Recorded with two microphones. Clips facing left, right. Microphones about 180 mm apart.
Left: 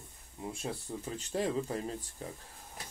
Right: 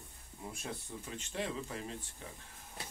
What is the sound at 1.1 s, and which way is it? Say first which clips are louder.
Speech: left 7 dB; 40° left (ahead or behind).